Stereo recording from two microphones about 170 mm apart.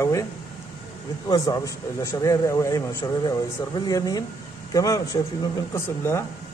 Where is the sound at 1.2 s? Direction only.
20° left (ahead or behind).